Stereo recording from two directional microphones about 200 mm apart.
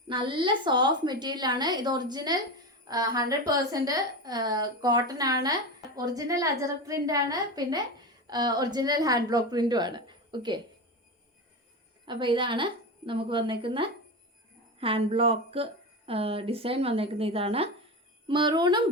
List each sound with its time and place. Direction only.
0.1 s a woman's voice: 25° right (ahead or behind)
12.0 s a woman's voice: 25° right (ahead or behind)